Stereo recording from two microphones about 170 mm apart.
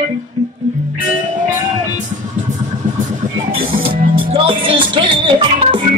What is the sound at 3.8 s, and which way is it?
Music, 30° right (ahead or behind).